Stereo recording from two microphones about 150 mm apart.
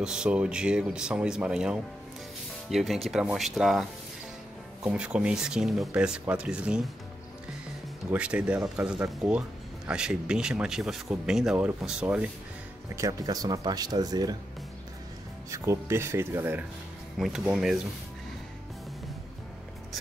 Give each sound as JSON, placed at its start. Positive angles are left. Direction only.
{"t": 0.0, "sound": "speech", "side_deg": -5}
{"t": 4.8, "sound": "speech", "side_deg": -5}
{"t": 8.1, "sound": "speech", "side_deg": -10}
{"t": 12.9, "sound": "speech", "side_deg": -20}
{"t": 15.5, "sound": "speech", "side_deg": -20}